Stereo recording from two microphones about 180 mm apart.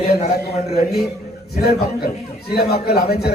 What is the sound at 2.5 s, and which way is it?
Speech, 60° left (ahead or behind).